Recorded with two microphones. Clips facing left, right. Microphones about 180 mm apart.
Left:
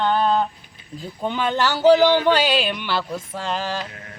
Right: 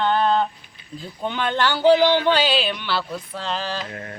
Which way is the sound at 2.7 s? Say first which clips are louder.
Left 1 dB; 10° left (ahead or behind).